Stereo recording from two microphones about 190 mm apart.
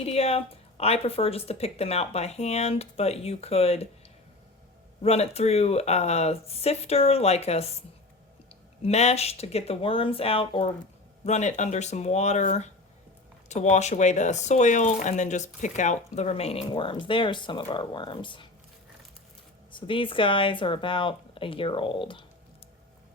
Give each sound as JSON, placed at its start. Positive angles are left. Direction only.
{"t": 0.0, "sound": "a woman's voice", "side_deg": 35}
{"t": 5.0, "sound": "a woman's voice", "side_deg": 35}
{"t": 8.8, "sound": "a woman's voice", "side_deg": 35}
{"t": 19.7, "sound": "speech", "side_deg": 25}